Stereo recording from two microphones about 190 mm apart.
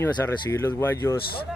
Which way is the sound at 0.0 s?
15° left (ahead or behind).